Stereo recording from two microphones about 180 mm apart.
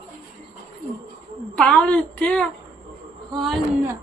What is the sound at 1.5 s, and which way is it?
Speech, 5° left (ahead or behind).